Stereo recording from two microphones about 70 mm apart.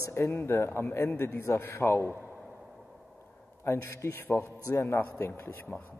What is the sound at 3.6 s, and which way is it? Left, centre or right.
Speech, left.